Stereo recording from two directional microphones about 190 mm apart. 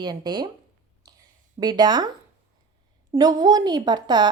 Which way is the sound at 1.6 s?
20° right (ahead or behind).